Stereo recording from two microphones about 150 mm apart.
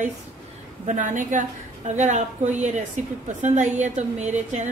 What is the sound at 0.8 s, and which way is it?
A woman's voice, 55° right (ahead or behind).